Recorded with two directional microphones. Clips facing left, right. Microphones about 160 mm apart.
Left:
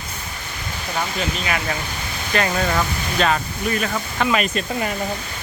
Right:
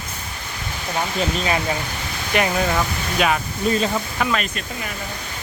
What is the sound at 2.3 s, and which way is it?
Speech, 15° right (ahead or behind).